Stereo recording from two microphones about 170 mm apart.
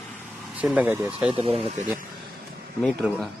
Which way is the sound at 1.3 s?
35° right (ahead or behind).